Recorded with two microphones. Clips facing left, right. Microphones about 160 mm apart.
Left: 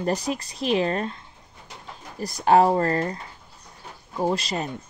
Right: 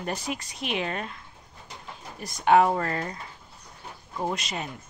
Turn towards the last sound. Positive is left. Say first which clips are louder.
# left 6 dB
turn(degrees=35)  # may be behind; listen again after turning